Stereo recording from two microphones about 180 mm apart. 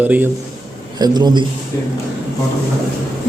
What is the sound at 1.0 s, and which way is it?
Speech, 20° right (ahead or behind).